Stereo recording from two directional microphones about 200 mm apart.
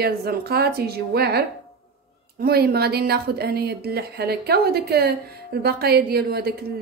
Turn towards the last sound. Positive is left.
turn(degrees=-50)  # may be behind; listen again after turning